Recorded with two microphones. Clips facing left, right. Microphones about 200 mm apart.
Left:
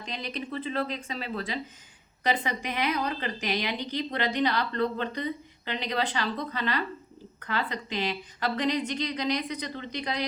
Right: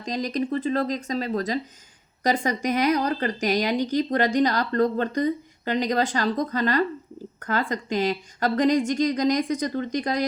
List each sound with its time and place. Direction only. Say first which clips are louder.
0.0 s speech: right 9 dB; 40° right (ahead or behind)